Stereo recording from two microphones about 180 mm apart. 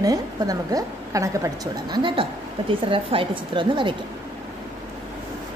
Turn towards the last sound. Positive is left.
turn(degrees=-25)  # may be behind; listen again after turning